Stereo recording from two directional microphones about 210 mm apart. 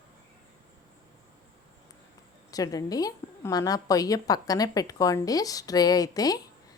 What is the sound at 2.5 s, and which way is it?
A woman's voice, 15° left (ahead or behind).